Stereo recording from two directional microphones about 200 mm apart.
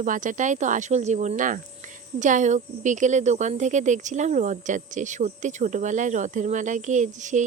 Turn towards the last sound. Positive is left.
turn(degrees=-40)  # may be behind; listen again after turning